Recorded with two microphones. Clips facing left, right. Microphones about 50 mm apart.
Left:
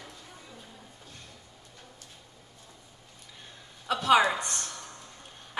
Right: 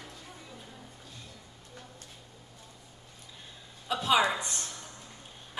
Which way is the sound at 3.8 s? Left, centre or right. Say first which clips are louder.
Left 4 dB; left.